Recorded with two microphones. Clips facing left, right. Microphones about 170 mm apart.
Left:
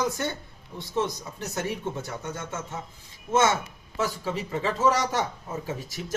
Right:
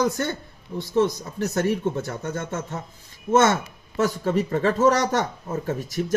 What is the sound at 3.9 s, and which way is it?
Speech, 50° right (ahead or behind).